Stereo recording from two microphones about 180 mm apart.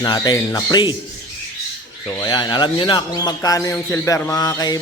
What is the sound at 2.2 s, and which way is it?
Speech, 25° left (ahead or behind).